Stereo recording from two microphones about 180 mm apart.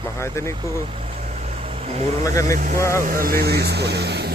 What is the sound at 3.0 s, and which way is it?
Speech, 55° right (ahead or behind).